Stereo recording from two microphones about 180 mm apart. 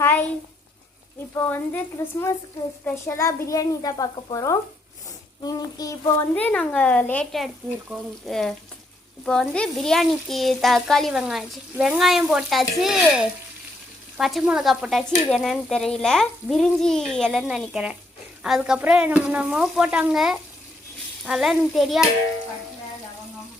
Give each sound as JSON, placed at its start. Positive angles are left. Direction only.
{"t": 0.0, "sound": "a sound", "side_deg": 10}
{"t": 1.4, "sound": "a woman's voice", "side_deg": 10}
{"t": 2.8, "sound": "a child's voice", "side_deg": 15}